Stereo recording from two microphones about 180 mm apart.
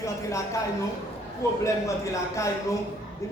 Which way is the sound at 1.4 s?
15° left (ahead or behind).